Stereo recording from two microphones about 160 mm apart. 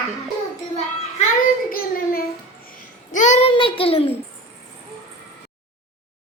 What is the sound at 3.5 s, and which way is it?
Speech, 35° left (ahead or behind).